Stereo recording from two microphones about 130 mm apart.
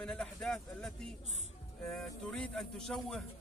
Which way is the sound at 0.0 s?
5° left (ahead or behind).